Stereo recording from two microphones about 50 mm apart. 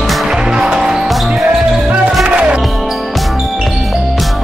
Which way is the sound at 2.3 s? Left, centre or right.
Right.